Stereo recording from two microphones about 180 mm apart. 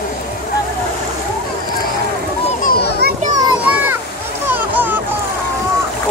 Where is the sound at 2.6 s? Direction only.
60° left (ahead or behind).